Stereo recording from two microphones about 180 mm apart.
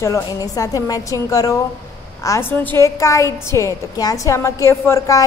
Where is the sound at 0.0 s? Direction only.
20° left (ahead or behind).